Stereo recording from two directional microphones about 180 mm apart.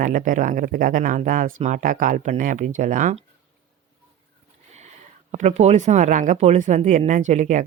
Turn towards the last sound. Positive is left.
turn(degrees=-45)  # may be behind; listen again after turning